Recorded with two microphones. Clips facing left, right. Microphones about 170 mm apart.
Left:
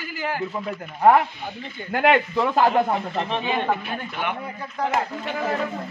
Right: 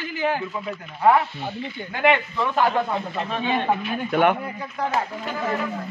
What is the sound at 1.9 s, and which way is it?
Speech, 50° left (ahead or behind).